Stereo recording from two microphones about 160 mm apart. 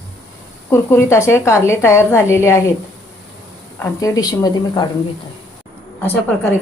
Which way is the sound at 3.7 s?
20° left (ahead or behind).